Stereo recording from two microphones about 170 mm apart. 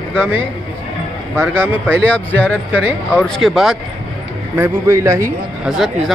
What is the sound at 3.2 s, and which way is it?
Speech, centre (ahead or behind).